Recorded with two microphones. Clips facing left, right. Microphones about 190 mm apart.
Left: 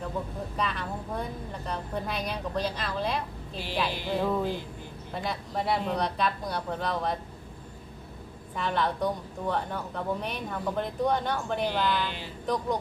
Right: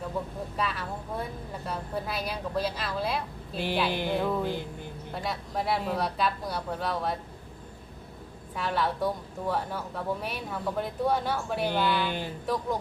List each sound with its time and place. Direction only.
0.5 s speech: 5° right (ahead or behind)
3.8 s music: 55° right (ahead or behind)
4.2 s speech: centre (ahead or behind)
8.5 s speech: 5° right (ahead or behind)